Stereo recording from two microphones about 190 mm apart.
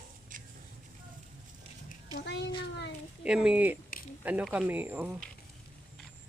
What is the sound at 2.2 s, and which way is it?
Speech, 65° left (ahead or behind).